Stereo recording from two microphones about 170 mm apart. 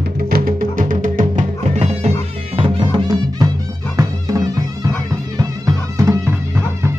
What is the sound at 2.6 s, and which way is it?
Music, 30° right (ahead or behind).